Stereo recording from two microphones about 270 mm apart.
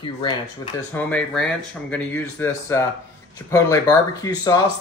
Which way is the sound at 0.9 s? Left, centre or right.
Centre.